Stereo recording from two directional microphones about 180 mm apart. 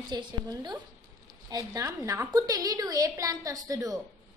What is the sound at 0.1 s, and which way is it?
A woman's voice, 25° right (ahead or behind).